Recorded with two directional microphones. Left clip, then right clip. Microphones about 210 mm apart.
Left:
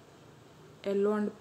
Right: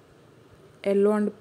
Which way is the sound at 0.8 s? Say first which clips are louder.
Right 7 dB; 30° right (ahead or behind).